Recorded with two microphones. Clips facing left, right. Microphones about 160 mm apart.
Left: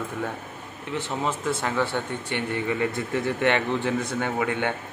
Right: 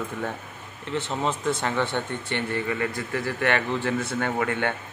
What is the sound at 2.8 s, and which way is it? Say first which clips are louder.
A man's voice: left 2 dB; 25° left (ahead or behind).